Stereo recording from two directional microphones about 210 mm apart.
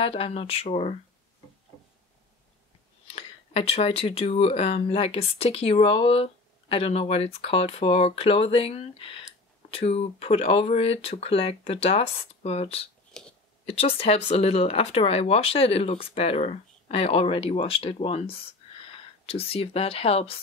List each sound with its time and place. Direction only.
0.0 s speech: 25° left (ahead or behind)
3.1 s speech: 30° left (ahead or behind)
13.2 s clicking: centre (ahead or behind)
13.7 s speech: 30° left (ahead or behind)